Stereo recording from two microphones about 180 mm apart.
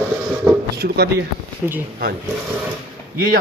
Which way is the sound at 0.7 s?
65° right (ahead or behind).